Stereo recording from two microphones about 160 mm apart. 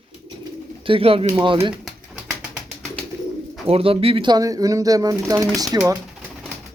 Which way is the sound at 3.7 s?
35° right (ahead or behind).